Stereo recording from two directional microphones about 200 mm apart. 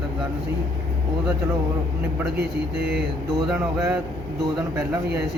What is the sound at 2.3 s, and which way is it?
Speech, 55° right (ahead or behind).